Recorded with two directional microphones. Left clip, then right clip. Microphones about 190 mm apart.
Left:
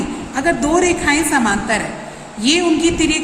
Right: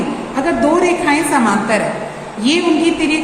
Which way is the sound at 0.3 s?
40° left (ahead or behind).